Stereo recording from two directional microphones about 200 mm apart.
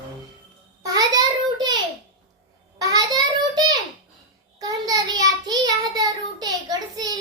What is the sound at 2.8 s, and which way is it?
Child singing, 20° right (ahead or behind).